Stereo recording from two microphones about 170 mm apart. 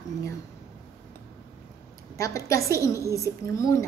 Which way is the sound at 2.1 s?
20° left (ahead or behind).